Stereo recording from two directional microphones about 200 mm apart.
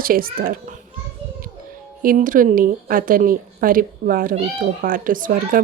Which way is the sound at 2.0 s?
45° right (ahead or behind).